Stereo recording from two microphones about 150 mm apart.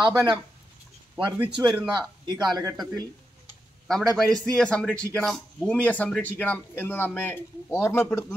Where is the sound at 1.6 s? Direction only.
5° right (ahead or behind).